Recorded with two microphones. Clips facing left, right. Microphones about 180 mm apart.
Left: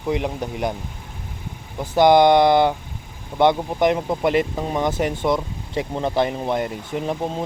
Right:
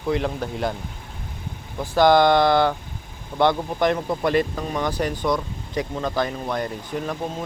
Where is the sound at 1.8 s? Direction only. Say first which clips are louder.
Left 2 dB; 20° left (ahead or behind).